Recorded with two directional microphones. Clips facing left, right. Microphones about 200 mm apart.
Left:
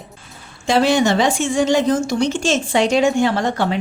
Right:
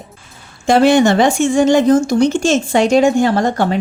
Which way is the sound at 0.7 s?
55° right (ahead or behind).